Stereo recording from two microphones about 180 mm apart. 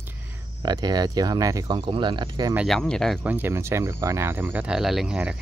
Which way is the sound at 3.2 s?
10° right (ahead or behind).